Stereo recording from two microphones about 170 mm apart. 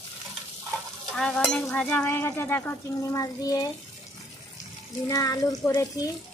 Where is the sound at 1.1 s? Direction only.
5° left (ahead or behind); by 3.6 s 20° left (ahead or behind).